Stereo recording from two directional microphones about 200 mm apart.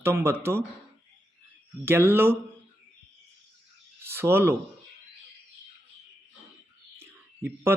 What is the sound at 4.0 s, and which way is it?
Speech, 10° right (ahead or behind).